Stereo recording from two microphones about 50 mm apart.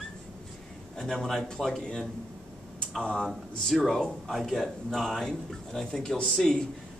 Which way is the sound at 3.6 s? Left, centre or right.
Centre.